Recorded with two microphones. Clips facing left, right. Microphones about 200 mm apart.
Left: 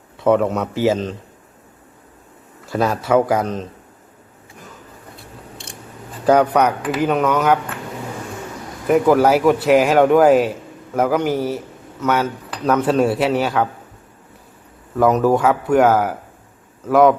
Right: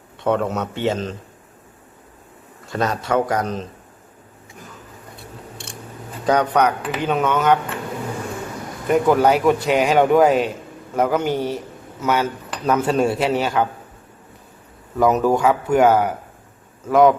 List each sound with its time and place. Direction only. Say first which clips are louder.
0.2 s speech: left 4 dB; centre (ahead or behind)
2.6 s speech: left 3 dB; 5° left (ahead or behind)
6.2 s speech: left 3 dB; 5° left (ahead or behind)
8.9 s speech: left 2 dB; 5° left (ahead or behind)
14.9 s speech: left 2 dB; centre (ahead or behind)